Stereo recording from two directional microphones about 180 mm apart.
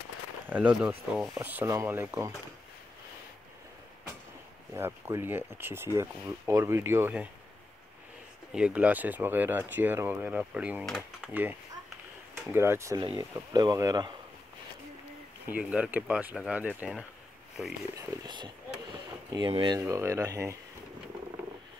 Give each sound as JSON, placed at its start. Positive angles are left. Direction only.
{"t": 0.5, "sound": "speech", "side_deg": -10}
{"t": 4.7, "sound": "speech", "side_deg": -15}
{"t": 8.5, "sound": "speech", "side_deg": -5}
{"t": 15.4, "sound": "speech", "side_deg": -10}
{"t": 17.9, "sound": "speech", "side_deg": -25}